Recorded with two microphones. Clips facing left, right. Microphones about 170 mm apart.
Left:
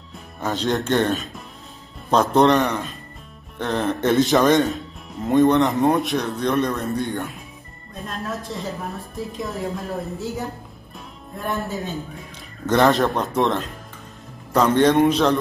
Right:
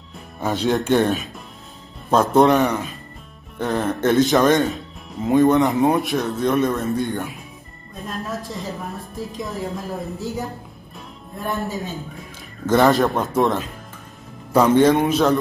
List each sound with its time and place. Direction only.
0.4 s speech: 10° right (ahead or behind)